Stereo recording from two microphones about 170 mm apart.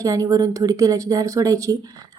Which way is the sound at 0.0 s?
20° right (ahead or behind).